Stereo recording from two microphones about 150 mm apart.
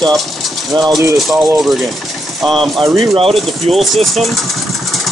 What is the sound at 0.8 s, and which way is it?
Speech, 25° right (ahead or behind).